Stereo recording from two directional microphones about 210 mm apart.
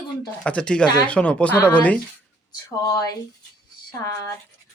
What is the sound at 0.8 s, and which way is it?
Speech, 20° left (ahead or behind).